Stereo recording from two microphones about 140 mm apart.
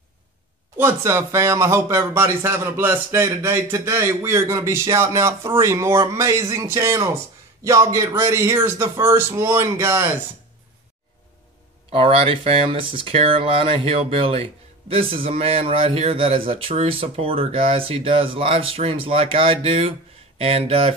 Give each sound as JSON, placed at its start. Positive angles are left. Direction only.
{"t": 0.7, "sound": "speech", "side_deg": -20}
{"t": 11.9, "sound": "speech", "side_deg": -40}